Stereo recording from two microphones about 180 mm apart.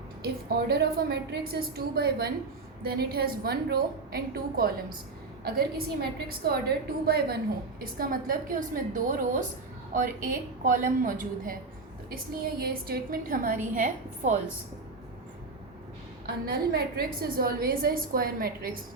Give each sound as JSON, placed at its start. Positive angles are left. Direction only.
{"t": 0.4, "sound": "a woman's voice", "side_deg": -60}
{"t": 12.5, "sound": "a woman's voice", "side_deg": -60}
{"t": 16.2, "sound": "a woman's voice", "side_deg": -60}